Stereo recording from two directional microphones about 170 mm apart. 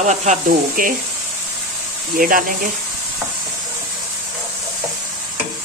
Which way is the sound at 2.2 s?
55° right (ahead or behind).